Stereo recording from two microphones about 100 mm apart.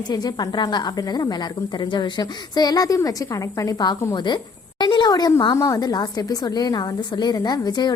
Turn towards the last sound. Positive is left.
turn(degrees=45)  # may be behind; listen again after turning